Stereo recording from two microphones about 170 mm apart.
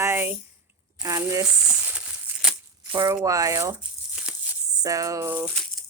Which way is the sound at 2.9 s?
20° right (ahead or behind).